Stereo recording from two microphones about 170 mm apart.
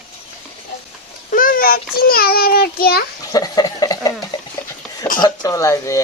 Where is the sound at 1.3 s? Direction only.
55° left (ahead or behind).